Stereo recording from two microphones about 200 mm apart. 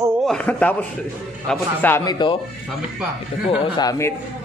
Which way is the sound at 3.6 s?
20° left (ahead or behind).